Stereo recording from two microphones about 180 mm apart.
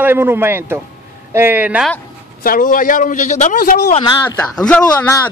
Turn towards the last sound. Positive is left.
turn(degrees=5)  # may be behind; listen again after turning